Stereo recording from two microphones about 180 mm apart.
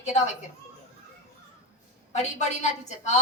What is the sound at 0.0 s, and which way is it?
Speech, 40° left (ahead or behind).